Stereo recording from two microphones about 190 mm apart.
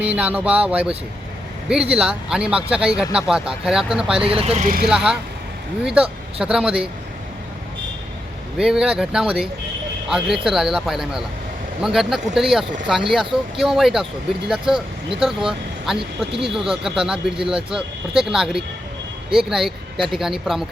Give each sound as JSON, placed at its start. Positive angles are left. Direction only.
{"t": 0.0, "sound": "speech", "side_deg": -10}
{"t": 4.2, "sound": "speech", "side_deg": -30}
{"t": 4.9, "sound": "speech", "side_deg": -5}
{"t": 8.5, "sound": "speech", "side_deg": -5}
{"t": 16.0, "sound": "speech", "side_deg": -30}
{"t": 16.6, "sound": "speech", "side_deg": 0}